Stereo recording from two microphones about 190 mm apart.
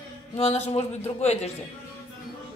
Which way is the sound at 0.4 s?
35° left (ahead or behind).